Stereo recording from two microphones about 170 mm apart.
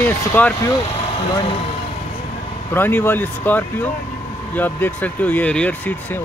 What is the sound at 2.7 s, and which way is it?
Speech, 10° left (ahead or behind).